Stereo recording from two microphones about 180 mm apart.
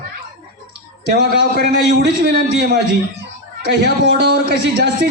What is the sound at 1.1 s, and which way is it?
A man's voice, 65° right (ahead or behind).